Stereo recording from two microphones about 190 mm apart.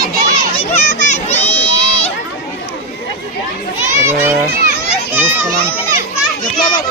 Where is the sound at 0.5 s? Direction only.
30° left (ahead or behind).